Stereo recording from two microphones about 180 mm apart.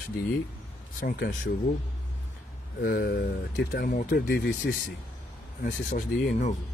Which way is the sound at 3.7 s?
45° left (ahead or behind).